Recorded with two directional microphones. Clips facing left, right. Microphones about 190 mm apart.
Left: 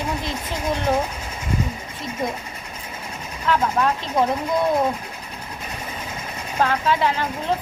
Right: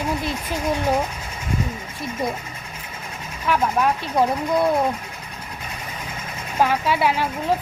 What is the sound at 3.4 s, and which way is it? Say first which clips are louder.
Speech: even; 10° right (ahead or behind).